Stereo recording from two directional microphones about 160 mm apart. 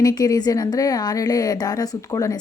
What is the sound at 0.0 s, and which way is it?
A woman's voice, 25° left (ahead or behind).